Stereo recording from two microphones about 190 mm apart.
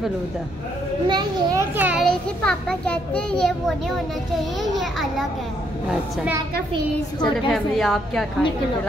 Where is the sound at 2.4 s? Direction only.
5° left (ahead or behind).